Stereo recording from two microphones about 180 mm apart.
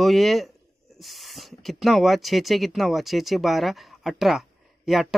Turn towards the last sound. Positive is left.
turn(degrees=0)  # may be behind; listen again after turning